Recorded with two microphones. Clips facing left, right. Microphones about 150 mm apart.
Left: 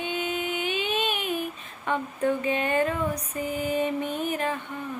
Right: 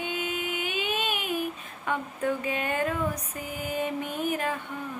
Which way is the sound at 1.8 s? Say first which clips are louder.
Left 3 dB; 5° right (ahead or behind).